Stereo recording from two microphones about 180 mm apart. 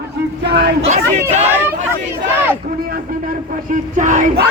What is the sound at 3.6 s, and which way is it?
Speech, 45° right (ahead or behind).